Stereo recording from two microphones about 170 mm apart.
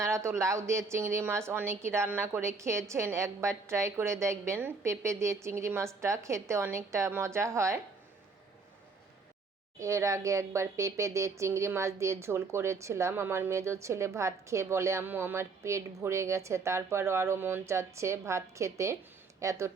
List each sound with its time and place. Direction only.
0.0 s speech: 15° right (ahead or behind)
9.8 s speech: 20° right (ahead or behind)